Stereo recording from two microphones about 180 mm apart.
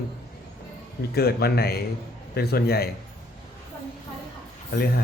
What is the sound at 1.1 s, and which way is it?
Speech, 60° left (ahead or behind).